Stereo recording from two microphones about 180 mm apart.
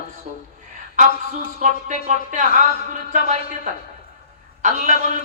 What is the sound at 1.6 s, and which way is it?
Speech, 45° right (ahead or behind).